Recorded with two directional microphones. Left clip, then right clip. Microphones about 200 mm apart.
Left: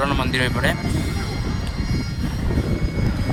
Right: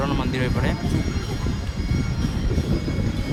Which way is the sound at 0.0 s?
15° left (ahead or behind).